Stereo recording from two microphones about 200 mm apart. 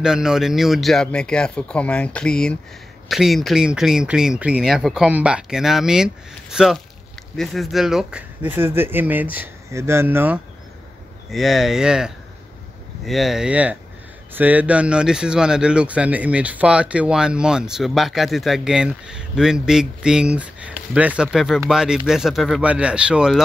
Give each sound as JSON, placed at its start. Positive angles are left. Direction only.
{"t": 0.0, "sound": "speech", "side_deg": -5}